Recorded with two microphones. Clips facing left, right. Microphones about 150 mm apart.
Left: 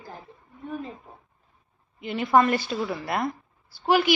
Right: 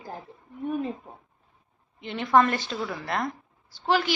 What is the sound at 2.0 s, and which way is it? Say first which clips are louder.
A woman's voice: left 1 dB; 5° left (ahead or behind).